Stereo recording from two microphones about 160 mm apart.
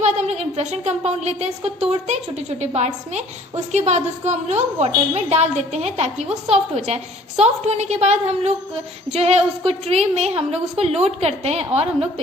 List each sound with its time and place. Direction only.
0.0 s a woman's voice: 40° right (ahead or behind)